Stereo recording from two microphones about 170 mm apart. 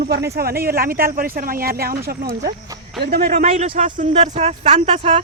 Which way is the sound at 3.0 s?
65° right (ahead or behind).